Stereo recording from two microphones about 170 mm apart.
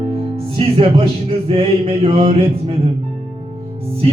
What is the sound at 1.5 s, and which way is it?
Speech, 35° right (ahead or behind).